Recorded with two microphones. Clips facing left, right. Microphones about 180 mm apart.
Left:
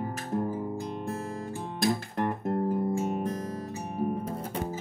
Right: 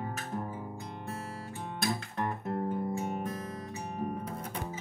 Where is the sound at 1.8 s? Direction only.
50° left (ahead or behind).